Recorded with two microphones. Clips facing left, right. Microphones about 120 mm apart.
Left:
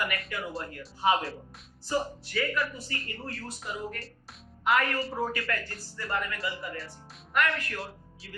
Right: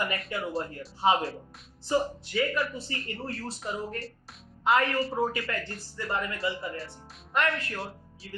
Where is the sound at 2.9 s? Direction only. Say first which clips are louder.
Right 3 dB; centre (ahead or behind).